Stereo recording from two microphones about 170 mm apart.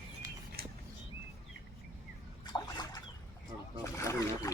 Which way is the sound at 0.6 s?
65° right (ahead or behind).